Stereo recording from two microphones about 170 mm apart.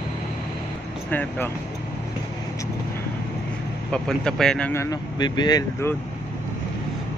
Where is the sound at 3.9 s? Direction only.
5° left (ahead or behind).